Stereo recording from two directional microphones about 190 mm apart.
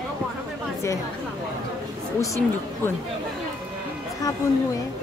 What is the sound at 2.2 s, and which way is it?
Speech, 15° left (ahead or behind).